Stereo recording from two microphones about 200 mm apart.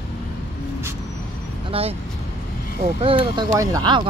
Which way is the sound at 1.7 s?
25° right (ahead or behind).